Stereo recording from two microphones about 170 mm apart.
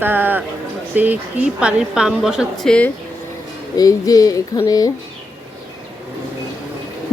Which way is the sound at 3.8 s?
20° left (ahead or behind).